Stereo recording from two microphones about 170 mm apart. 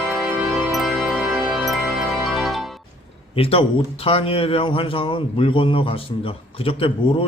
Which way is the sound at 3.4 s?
35° left (ahead or behind).